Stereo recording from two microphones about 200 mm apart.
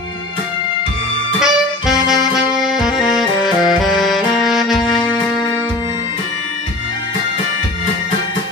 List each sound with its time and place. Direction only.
1.4 s music: centre (ahead or behind)